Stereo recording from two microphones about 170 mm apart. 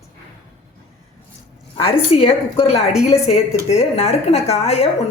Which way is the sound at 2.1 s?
35° left (ahead or behind).